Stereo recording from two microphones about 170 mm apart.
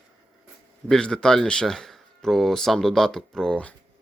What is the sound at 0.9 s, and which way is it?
Speech, 5° left (ahead or behind).